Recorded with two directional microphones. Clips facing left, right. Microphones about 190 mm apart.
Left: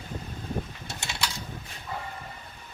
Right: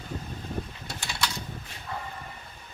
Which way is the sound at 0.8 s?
25° left (ahead or behind).